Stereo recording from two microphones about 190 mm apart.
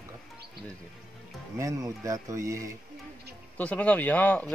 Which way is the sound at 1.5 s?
15° right (ahead or behind).